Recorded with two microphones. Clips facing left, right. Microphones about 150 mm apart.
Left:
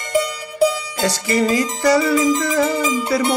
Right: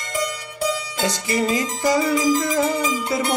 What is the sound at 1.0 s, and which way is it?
Music, 20° right (ahead or behind).